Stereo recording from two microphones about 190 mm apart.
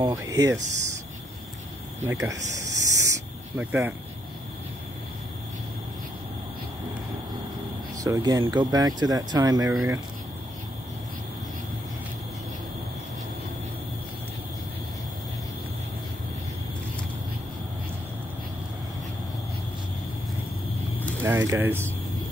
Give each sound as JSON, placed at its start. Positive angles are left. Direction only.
{"t": 0.0, "sound": "speech", "side_deg": -20}
{"t": 2.0, "sound": "speech", "side_deg": -15}
{"t": 2.5, "sound": "a sound", "side_deg": -15}
{"t": 3.5, "sound": "speech", "side_deg": -10}
{"t": 8.0, "sound": "speech", "side_deg": -20}
{"t": 21.2, "sound": "speech", "side_deg": -10}